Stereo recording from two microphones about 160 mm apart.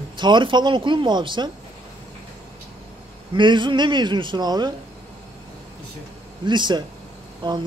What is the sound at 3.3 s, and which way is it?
A man's voice, 30° right (ahead or behind).